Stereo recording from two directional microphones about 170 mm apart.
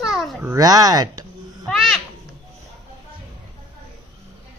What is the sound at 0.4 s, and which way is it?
Speech, 20° right (ahead or behind).